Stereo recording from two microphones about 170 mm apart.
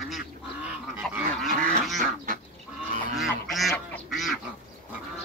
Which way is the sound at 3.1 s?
Centre (ahead or behind).